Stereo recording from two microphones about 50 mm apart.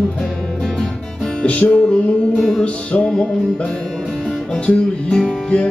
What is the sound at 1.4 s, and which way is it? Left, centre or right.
Music, left.